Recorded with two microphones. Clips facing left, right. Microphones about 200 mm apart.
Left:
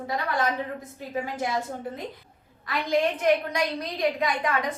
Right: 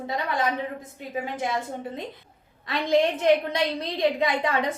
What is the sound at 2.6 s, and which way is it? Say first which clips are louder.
A woman's voice: right 3 dB; 25° right (ahead or behind).